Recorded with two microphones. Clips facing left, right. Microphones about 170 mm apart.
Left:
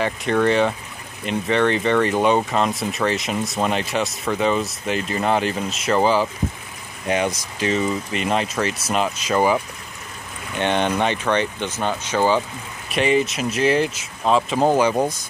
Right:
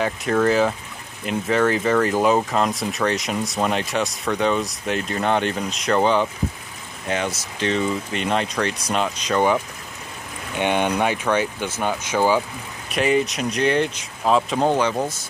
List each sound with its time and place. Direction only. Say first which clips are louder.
0.0 s speech: even; centre (ahead or behind)
7.1 s speech: left 3 dB; 15° left (ahead or behind)
10.6 s speech: even; 10° right (ahead or behind)
12.9 s speech: left 1 dB; centre (ahead or behind); by 15.2 s 15° left (ahead or behind)